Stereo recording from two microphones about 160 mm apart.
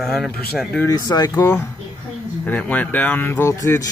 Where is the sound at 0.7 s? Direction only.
20° left (ahead or behind).